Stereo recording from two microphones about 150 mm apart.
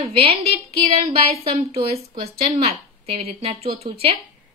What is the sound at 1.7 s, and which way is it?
A woman's voice, 40° right (ahead or behind).